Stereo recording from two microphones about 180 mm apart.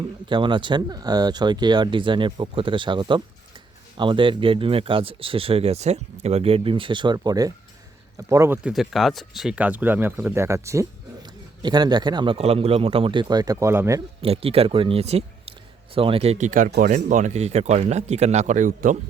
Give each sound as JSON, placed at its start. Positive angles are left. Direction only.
{"t": 0.3, "sound": "speech", "side_deg": -25}
{"t": 8.7, "sound": "speech", "side_deg": 0}
{"t": 14.2, "sound": "speech", "side_deg": -30}
{"t": 16.9, "sound": "speech", "side_deg": -45}